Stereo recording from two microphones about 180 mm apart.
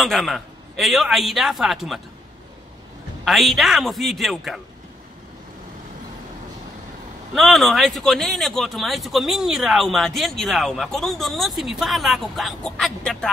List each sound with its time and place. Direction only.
0.0 s speech: centre (ahead or behind)
3.3 s speech: centre (ahead or behind)
7.3 s speech: centre (ahead or behind)